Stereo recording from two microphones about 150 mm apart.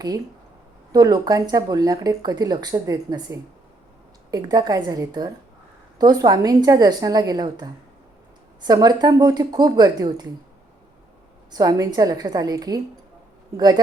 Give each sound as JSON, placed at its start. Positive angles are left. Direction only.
{"t": 0.9, "sound": "speech", "side_deg": -25}
{"t": 11.5, "sound": "speech", "side_deg": -25}